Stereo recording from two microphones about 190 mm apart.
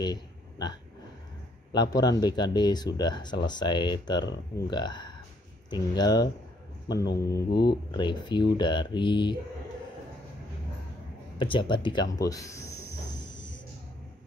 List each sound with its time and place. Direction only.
0.0 s burping: 20° left (ahead or behind)
1.7 s speech: 20° left (ahead or behind)
11.3 s speech: 25° left (ahead or behind)